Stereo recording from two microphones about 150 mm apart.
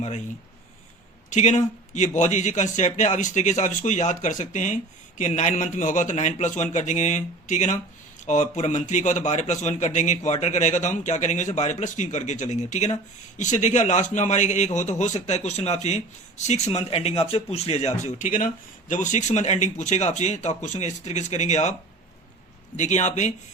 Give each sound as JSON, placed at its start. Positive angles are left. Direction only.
{"t": 1.3, "sound": "a man's voice", "side_deg": 50}
{"t": 22.8, "sound": "a man's voice", "side_deg": 50}